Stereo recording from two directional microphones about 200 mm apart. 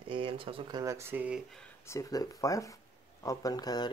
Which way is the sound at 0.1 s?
25° right (ahead or behind).